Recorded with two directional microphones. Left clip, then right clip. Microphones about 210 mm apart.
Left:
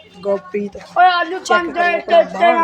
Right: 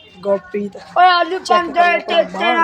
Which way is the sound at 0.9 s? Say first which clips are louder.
Right 1 dB; 50° right (ahead or behind).